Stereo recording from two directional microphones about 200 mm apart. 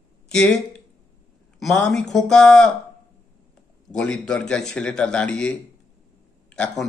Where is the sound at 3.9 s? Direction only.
5° left (ahead or behind).